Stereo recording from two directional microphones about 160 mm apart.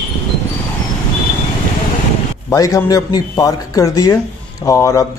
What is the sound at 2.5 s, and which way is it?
Speech, 20° left (ahead or behind).